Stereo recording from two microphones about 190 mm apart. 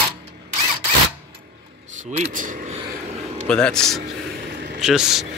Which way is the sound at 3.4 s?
5° left (ahead or behind).